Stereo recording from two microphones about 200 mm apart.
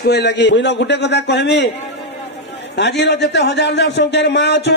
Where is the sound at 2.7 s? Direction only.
60° left (ahead or behind).